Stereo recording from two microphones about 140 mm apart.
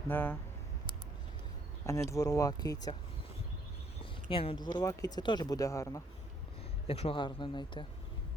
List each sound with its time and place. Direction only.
0.1 s speech: 15° left (ahead or behind)
1.9 s speech: 20° left (ahead or behind)
4.3 s speech: 40° left (ahead or behind)
4.7 s speech: 25° left (ahead or behind)
6.8 s speech: 45° left (ahead or behind)